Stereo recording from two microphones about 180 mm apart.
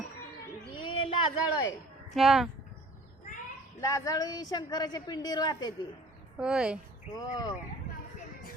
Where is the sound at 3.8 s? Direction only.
20° left (ahead or behind).